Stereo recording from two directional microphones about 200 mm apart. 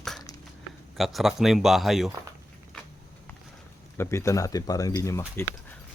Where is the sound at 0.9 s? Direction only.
Centre (ahead or behind).